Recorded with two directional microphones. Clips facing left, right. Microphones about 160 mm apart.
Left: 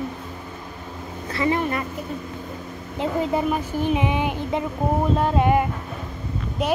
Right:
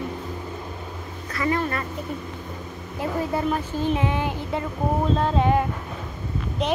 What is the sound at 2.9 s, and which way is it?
Female singing, 20° left (ahead or behind).